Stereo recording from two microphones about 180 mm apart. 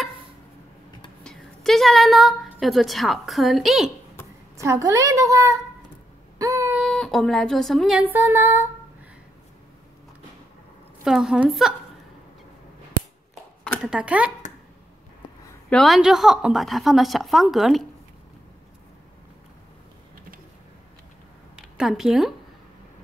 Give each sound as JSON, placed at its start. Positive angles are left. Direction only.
{"t": 1.2, "sound": "a woman's voice", "side_deg": 0}
{"t": 4.6, "sound": "a woman's voice", "side_deg": -15}
{"t": 6.3, "sound": "a sound", "side_deg": -20}
{"t": 6.8, "sound": "speech", "side_deg": 0}
{"t": 11.1, "sound": "a woman's voice", "side_deg": 0}
{"t": 13.8, "sound": "a woman's voice", "side_deg": -5}
{"t": 15.7, "sound": "a woman's voice", "side_deg": 0}
{"t": 21.5, "sound": "speech", "side_deg": -5}